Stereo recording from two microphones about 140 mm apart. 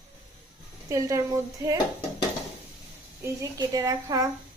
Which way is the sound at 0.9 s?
20° right (ahead or behind).